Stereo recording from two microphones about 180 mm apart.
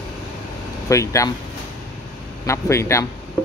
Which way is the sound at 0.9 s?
15° left (ahead or behind).